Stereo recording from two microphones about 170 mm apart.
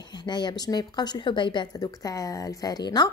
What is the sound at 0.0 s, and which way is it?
Speech, 25° left (ahead or behind).